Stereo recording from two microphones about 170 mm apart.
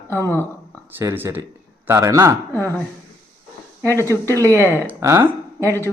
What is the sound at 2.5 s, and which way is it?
Speech, 10° left (ahead or behind).